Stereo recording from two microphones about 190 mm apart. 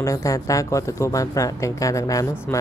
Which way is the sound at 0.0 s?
15° left (ahead or behind).